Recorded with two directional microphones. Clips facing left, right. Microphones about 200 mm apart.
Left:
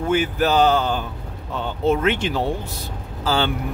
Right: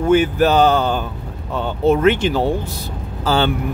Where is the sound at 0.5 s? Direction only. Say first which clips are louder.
Even; 55° right (ahead or behind).